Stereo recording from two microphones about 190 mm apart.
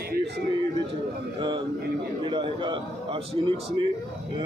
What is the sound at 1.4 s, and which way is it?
A man's voice, 25° right (ahead or behind).